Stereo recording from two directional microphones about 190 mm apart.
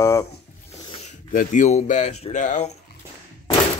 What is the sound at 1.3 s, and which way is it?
Speech, 45° left (ahead or behind).